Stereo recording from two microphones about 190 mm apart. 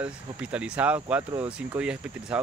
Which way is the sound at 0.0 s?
5° right (ahead or behind).